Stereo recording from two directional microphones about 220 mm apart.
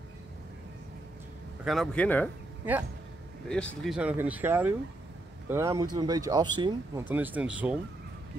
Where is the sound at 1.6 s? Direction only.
Centre (ahead or behind).